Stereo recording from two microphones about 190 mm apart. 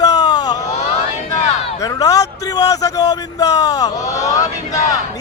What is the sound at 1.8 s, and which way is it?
A man's voice, 20° left (ahead or behind).